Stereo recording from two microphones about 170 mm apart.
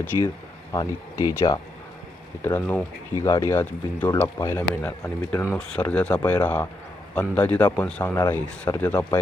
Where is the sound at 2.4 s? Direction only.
10° left (ahead or behind).